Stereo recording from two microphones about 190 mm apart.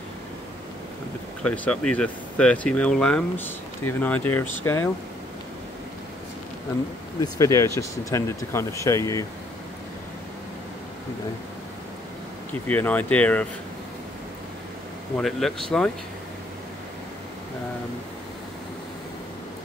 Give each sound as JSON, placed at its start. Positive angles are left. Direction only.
{"t": 1.4, "sound": "speech", "side_deg": 5}
{"t": 7.2, "sound": "speech", "side_deg": 15}
{"t": 12.6, "sound": "speech", "side_deg": 10}
{"t": 15.1, "sound": "speech", "side_deg": 5}